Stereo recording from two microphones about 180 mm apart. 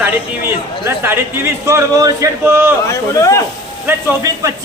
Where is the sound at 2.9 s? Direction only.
15° left (ahead or behind).